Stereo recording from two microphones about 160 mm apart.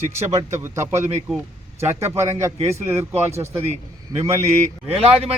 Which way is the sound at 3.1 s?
15° right (ahead or behind).